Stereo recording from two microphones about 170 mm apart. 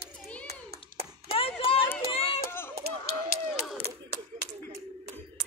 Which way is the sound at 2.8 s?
70° right (ahead or behind).